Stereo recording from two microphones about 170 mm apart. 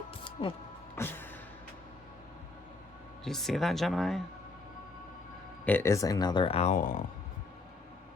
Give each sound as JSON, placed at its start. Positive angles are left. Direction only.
{"t": 0.4, "sound": "speech", "side_deg": 35}
{"t": 0.9, "sound": "music", "side_deg": 10}
{"t": 3.2, "sound": "speech", "side_deg": 0}
{"t": 5.6, "sound": "speech", "side_deg": 15}